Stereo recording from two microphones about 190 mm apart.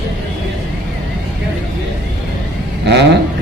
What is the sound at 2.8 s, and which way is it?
Speech, 60° right (ahead or behind).